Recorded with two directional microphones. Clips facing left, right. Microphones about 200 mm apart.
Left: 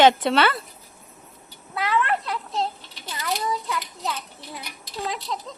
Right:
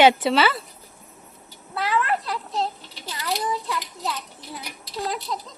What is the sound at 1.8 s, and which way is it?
Speech, centre (ahead or behind).